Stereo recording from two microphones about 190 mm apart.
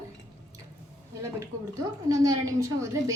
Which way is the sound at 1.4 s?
15° right (ahead or behind).